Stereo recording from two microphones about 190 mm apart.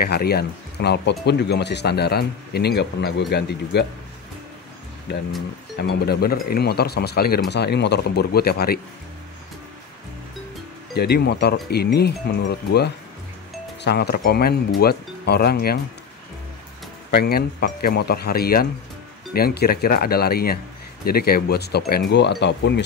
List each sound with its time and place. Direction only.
0.0 s speech: 55° left (ahead or behind)
5.8 s speech: 60° left (ahead or behind)
11.0 s speech: 60° left (ahead or behind)
17.1 s speech: 55° left (ahead or behind)